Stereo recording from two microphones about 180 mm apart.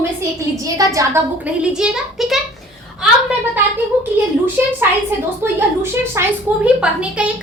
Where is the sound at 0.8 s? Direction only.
20° right (ahead or behind).